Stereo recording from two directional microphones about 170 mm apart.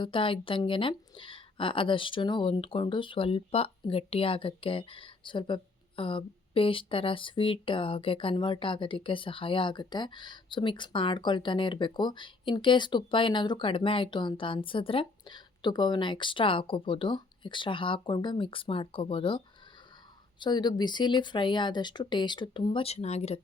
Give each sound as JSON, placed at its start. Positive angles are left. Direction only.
{"t": 0.0, "sound": "speech", "side_deg": 30}
{"t": 20.4, "sound": "speech", "side_deg": 25}